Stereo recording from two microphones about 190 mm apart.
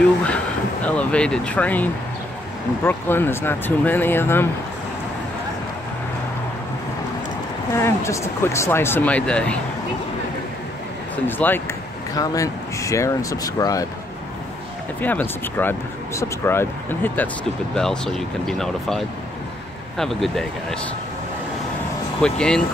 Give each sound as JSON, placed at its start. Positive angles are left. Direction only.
{"t": 0.8, "sound": "speech", "side_deg": 5}
{"t": 7.7, "sound": "speech", "side_deg": 15}
{"t": 11.2, "sound": "speech", "side_deg": 10}
{"t": 15.0, "sound": "speech", "side_deg": 10}
{"t": 22.2, "sound": "speech", "side_deg": 5}